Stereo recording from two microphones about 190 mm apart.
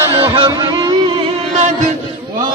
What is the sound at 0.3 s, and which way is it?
Music, 25° right (ahead or behind).